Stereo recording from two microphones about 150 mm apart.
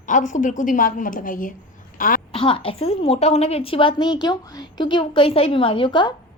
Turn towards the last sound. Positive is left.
turn(degrees=30)  # may be behind; listen again after turning